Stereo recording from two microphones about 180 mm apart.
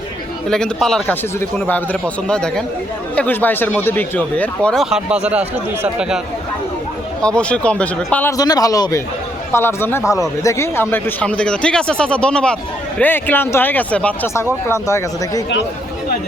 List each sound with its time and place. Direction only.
0.4 s speech: 5° left (ahead or behind)
7.2 s speech: 5° left (ahead or behind)